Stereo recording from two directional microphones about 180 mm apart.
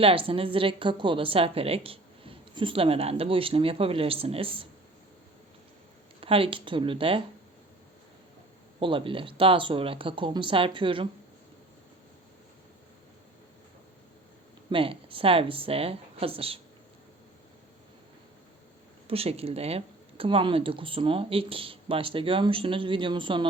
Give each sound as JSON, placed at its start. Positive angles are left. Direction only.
{"t": 0.0, "sound": "a woman's voice", "side_deg": -30}
{"t": 6.1, "sound": "speech", "side_deg": -30}
{"t": 8.8, "sound": "speech", "side_deg": -30}
{"t": 14.7, "sound": "a woman's voice", "side_deg": -30}
{"t": 19.0, "sound": "speech", "side_deg": -35}